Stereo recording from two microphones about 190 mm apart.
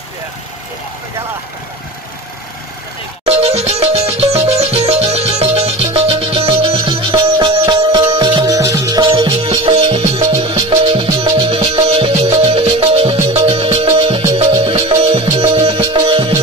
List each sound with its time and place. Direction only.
3.3 s music: 35° right (ahead or behind)